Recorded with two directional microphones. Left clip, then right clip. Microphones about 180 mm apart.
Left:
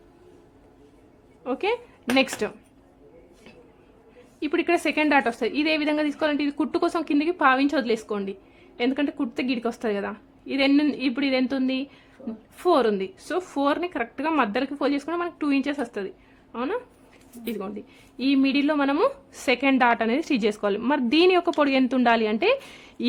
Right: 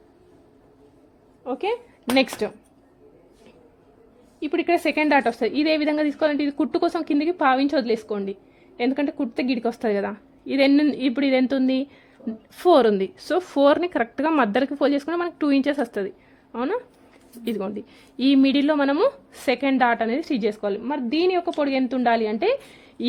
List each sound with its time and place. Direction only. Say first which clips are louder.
1.5 s a woman's voice: even; 5° right (ahead or behind)
4.4 s speech: even; 5° right (ahead or behind)
4.6 s a woman's voice: right 2 dB; 15° right (ahead or behind)